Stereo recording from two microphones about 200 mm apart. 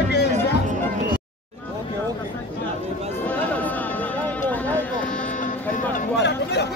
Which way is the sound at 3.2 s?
10° left (ahead or behind).